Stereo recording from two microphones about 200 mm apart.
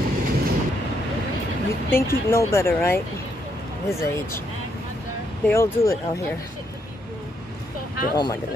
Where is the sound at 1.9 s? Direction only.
10° left (ahead or behind).